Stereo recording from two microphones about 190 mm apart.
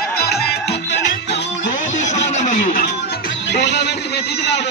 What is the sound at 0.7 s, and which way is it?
Music, 65° left (ahead or behind).